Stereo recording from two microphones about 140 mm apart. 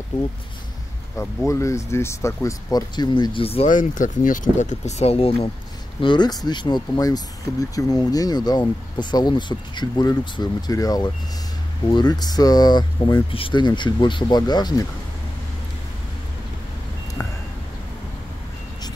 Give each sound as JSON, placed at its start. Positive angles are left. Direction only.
{"t": 1.5, "sound": "speech", "side_deg": 20}
{"t": 3.6, "sound": "speech", "side_deg": 70}
{"t": 5.9, "sound": "speech", "side_deg": 35}